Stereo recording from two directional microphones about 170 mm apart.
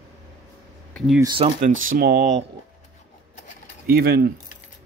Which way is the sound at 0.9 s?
Centre (ahead or behind).